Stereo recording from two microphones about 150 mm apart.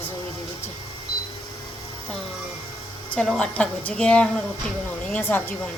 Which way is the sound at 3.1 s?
5° left (ahead or behind).